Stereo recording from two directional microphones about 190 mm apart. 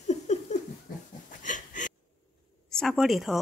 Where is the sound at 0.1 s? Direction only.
35° left (ahead or behind).